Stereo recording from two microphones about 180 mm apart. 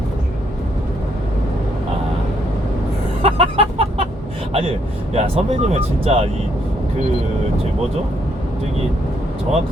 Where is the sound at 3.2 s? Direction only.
30° right (ahead or behind).